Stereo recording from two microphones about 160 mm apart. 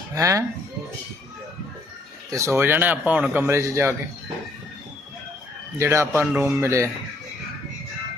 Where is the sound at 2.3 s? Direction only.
15° right (ahead or behind).